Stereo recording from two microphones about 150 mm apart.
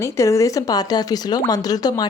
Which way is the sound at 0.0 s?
20° left (ahead or behind).